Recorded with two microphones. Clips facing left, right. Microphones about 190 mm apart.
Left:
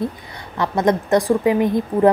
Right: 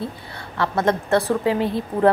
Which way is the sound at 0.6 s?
15° left (ahead or behind).